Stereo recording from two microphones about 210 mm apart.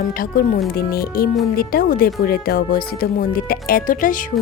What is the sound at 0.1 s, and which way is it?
Speech, 45° left (ahead or behind).